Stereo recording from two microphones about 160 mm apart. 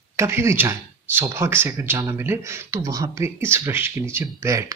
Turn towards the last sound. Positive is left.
turn(degrees=-20)  # may be behind; listen again after turning